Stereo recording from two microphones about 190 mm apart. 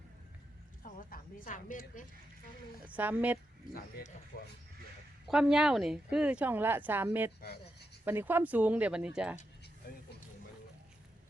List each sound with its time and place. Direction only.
0.8 s speech: 45° left (ahead or behind)
2.8 s speech: 10° right (ahead or behind)
3.8 s speech: 50° left (ahead or behind)
5.3 s speech: 5° right (ahead or behind)
7.4 s a sound: 60° left (ahead or behind)
8.0 s speech: 10° right (ahead or behind)